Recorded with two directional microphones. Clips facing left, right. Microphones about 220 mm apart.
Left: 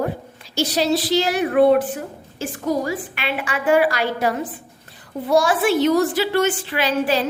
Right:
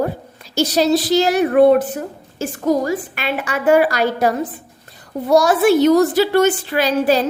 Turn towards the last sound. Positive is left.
turn(degrees=-40)  # may be behind; listen again after turning